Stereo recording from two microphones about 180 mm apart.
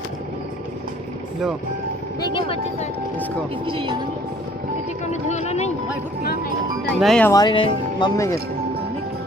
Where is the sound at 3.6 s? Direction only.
25° right (ahead or behind).